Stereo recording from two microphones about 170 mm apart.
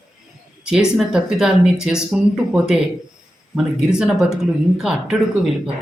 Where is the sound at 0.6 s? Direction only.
5° right (ahead or behind).